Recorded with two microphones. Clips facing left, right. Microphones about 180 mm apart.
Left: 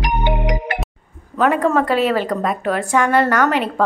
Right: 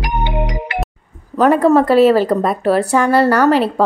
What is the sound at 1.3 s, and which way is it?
A woman's voice, 40° right (ahead or behind).